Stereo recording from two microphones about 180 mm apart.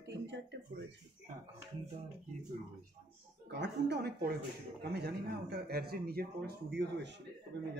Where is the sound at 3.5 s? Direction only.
70° right (ahead or behind).